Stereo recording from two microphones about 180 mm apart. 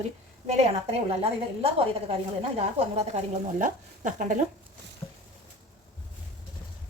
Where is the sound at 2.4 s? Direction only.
35° right (ahead or behind).